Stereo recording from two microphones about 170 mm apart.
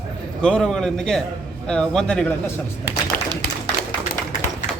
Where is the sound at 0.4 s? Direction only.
5° left (ahead or behind).